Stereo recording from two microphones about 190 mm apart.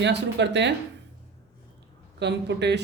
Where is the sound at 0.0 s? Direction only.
65° right (ahead or behind).